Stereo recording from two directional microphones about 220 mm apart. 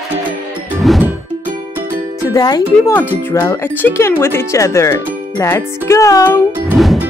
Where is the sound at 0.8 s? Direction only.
5° right (ahead or behind).